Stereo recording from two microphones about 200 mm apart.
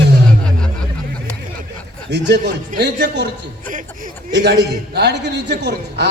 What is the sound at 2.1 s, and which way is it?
A man's voice, 60° right (ahead or behind).